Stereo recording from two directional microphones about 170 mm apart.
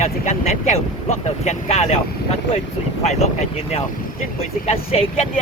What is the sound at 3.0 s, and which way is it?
Speech, 40° left (ahead or behind).